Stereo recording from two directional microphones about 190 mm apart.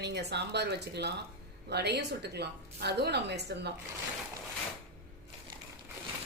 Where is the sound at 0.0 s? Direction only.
60° right (ahead or behind).